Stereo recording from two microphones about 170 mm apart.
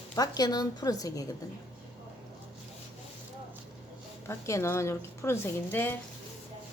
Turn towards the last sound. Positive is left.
turn(degrees=15)  # may be behind; listen again after turning